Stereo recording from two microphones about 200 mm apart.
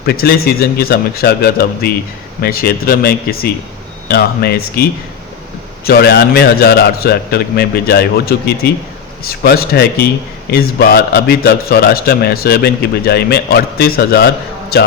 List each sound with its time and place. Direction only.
0.0 s a man's voice: 50° left (ahead or behind)